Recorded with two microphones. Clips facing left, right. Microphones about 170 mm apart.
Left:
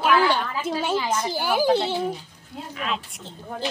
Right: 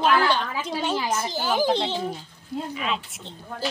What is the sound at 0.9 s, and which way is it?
Speech, 10° right (ahead or behind).